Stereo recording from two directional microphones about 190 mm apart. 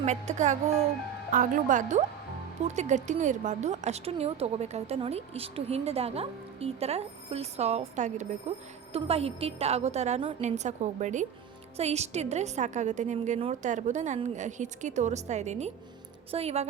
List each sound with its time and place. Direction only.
0.0 s a woman's voice: 35° right (ahead or behind)